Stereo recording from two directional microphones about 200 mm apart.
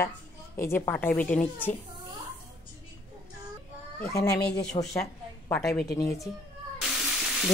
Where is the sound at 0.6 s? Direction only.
10° left (ahead or behind).